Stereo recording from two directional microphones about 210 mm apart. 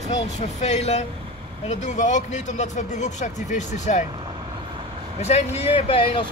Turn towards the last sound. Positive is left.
turn(degrees=25)  # may be behind; listen again after turning